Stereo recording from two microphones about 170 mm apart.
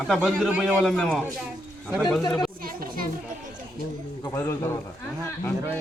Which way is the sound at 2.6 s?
55° right (ahead or behind).